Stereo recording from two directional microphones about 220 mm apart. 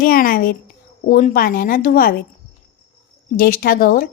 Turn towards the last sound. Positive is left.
turn(degrees=40)  # may be behind; listen again after turning